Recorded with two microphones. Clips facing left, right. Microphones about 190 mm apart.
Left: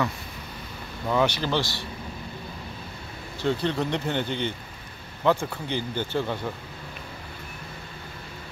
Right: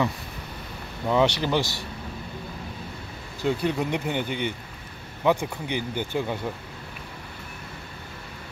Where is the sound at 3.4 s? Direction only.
10° right (ahead or behind).